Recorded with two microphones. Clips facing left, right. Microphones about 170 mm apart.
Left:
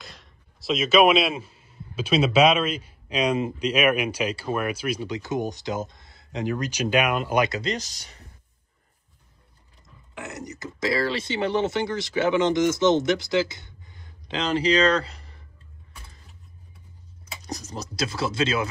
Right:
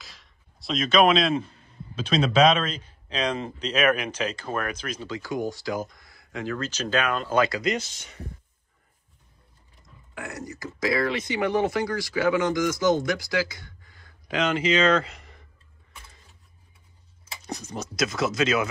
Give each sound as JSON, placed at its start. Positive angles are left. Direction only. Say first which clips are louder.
{"t": 0.0, "sound": "a man's voice", "louder": "left 6 dB", "side_deg": 0}
{"t": 7.7, "sound": "speech", "louder": "right 2 dB", "side_deg": 40}
{"t": 10.1, "sound": "speech", "louder": "even", "side_deg": 20}
{"t": 17.5, "sound": "speech", "louder": "right 1 dB", "side_deg": 35}